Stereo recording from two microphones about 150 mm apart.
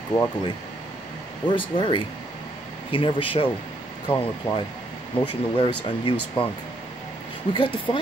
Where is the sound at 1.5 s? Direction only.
35° left (ahead or behind).